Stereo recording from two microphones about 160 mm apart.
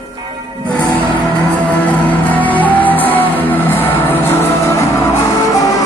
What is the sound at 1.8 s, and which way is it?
Music, 10° left (ahead or behind).